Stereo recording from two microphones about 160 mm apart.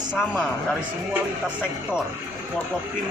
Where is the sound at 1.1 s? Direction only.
10° right (ahead or behind).